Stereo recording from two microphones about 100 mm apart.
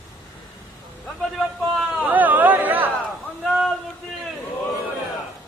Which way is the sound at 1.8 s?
15° right (ahead or behind).